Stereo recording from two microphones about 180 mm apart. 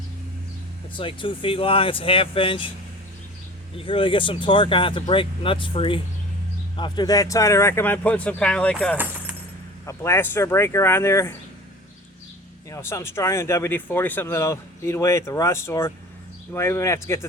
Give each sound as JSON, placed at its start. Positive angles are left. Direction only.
{"t": 0.9, "sound": "speech", "side_deg": 25}
{"t": 3.8, "sound": "speech", "side_deg": 30}
{"t": 12.7, "sound": "speech", "side_deg": 15}